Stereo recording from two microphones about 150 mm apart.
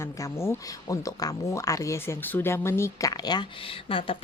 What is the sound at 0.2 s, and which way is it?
A woman's voice, 20° left (ahead or behind).